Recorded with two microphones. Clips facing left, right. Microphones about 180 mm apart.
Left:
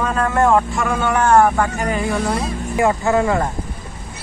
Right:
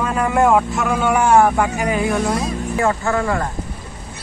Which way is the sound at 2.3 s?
15° left (ahead or behind).